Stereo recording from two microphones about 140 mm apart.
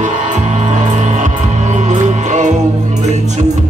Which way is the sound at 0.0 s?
60° right (ahead or behind).